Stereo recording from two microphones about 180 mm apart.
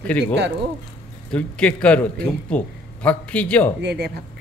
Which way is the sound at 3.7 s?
65° right (ahead or behind).